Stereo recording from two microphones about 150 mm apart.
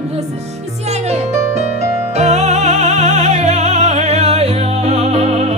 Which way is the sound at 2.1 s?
50° right (ahead or behind).